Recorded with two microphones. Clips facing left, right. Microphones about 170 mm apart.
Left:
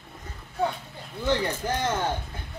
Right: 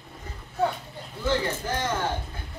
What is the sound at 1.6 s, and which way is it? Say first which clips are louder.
Speech: left 1 dB; 20° left (ahead or behind).